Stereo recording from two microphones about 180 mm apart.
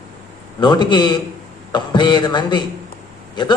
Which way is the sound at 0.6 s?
25° left (ahead or behind).